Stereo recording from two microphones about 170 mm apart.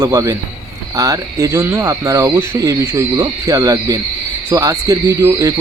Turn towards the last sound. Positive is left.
turn(degrees=-20)  # may be behind; listen again after turning